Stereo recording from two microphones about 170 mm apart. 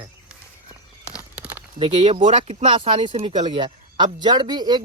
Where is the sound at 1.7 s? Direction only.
30° right (ahead or behind).